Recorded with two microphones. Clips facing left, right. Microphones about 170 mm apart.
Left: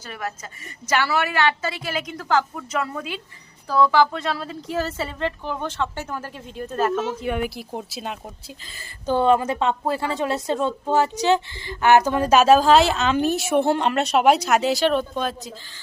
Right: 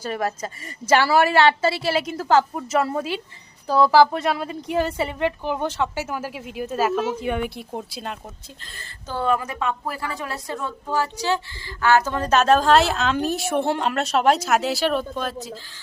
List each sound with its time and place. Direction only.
0.1 s a woman's voice: 35° right (ahead or behind); by 7.2 s 10° right (ahead or behind)
7.2 s speech: centre (ahead or behind)
9.0 s a woman's voice: 20° left (ahead or behind); by 15.5 s centre (ahead or behind)